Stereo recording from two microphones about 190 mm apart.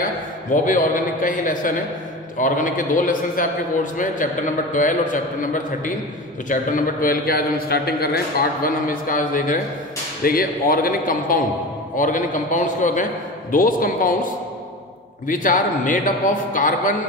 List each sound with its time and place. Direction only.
0.5 s a man's voice: 45° left (ahead or behind)
15.2 s a man's voice: 45° left (ahead or behind)